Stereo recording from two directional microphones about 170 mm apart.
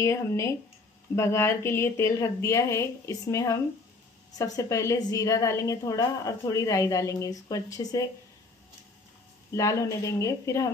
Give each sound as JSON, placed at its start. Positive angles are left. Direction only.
{"t": 0.0, "sound": "a woman's voice", "side_deg": 15}
{"t": 9.5, "sound": "a woman's voice", "side_deg": 20}